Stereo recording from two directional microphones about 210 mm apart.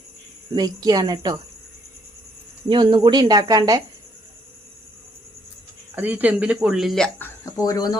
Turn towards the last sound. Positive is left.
turn(degrees=15)  # may be behind; listen again after turning